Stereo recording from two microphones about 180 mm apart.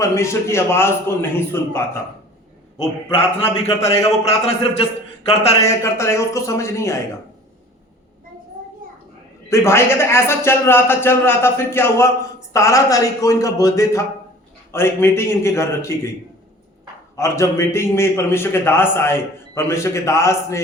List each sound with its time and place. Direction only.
0.0 s a man's voice: 15° left (ahead or behind)
3.1 s a man's voice: 30° left (ahead or behind)
5.5 s a man's voice: 15° left (ahead or behind)
9.5 s a man's voice: 15° left (ahead or behind)
17.2 s a man's voice: 15° left (ahead or behind)